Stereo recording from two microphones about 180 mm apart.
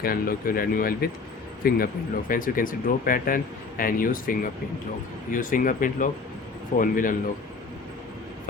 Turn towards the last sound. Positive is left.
turn(degrees=50)  # may be behind; listen again after turning